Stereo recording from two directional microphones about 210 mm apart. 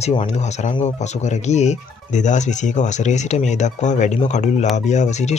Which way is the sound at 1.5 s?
35° left (ahead or behind).